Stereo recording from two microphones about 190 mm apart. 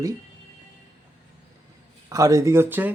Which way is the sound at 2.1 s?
15° right (ahead or behind).